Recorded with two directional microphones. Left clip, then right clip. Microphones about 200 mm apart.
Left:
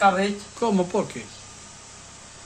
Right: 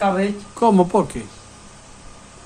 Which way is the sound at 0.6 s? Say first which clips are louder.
Right 8 dB; 15° right (ahead or behind).